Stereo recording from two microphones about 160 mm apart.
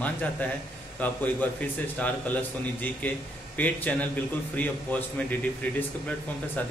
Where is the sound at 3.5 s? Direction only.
10° left (ahead or behind).